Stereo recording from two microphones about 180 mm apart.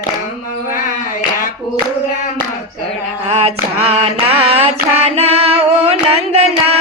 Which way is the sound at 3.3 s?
35° right (ahead or behind).